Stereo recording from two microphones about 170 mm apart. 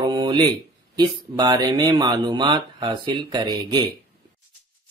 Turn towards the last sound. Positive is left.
turn(degrees=-25)  # may be behind; listen again after turning